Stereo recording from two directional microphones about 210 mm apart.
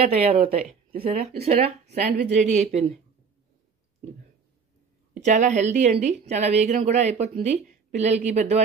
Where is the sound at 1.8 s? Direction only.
50° right (ahead or behind).